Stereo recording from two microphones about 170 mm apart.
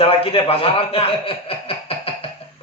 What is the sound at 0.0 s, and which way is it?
A man's voice, 35° left (ahead or behind).